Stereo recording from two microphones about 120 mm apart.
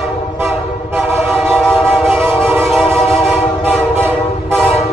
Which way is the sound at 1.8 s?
5° right (ahead or behind).